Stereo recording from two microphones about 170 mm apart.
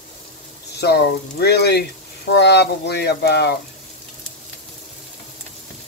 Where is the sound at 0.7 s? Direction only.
75° left (ahead or behind).